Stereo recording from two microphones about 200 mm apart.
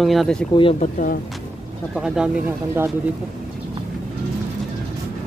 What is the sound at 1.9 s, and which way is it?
Speech, 5° right (ahead or behind).